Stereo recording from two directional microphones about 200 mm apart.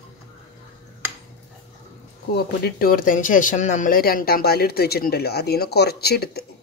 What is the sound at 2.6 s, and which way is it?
Speech, 50° left (ahead or behind).